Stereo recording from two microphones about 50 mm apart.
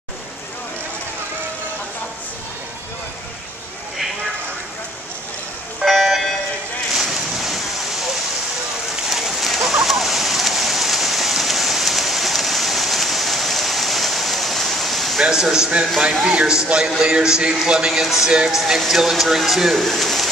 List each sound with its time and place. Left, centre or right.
5.9 s a sound: centre
6.9 s boat: centre
9.1 s fowl: centre
15.1 s a man's voice: centre